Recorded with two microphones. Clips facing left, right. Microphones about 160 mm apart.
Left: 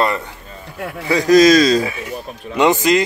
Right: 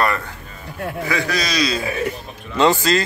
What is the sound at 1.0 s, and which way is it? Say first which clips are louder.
Speech: left 14 dB; 35° left (ahead or behind).